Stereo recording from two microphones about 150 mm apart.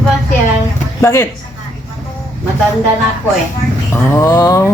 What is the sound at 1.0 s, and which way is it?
Speech, 20° left (ahead or behind).